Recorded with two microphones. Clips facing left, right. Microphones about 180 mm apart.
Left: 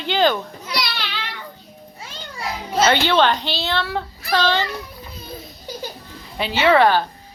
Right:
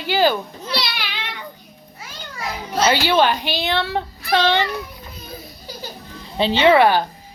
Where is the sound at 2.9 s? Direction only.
10° right (ahead or behind).